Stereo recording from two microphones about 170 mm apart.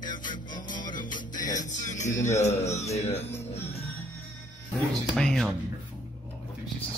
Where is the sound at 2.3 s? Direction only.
40° left (ahead or behind).